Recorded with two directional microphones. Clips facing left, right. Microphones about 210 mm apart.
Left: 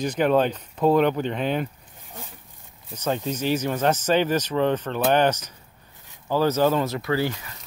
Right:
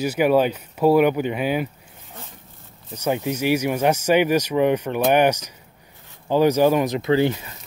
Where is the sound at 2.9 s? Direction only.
10° right (ahead or behind).